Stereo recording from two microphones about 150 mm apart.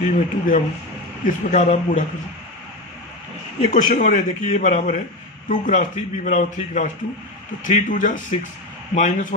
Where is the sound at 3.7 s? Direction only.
55° left (ahead or behind).